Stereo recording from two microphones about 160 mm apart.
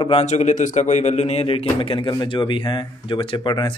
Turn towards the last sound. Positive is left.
turn(degrees=30)  # may be behind; listen again after turning